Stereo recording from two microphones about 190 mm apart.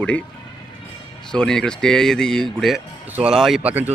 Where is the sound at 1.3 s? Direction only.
5° left (ahead or behind).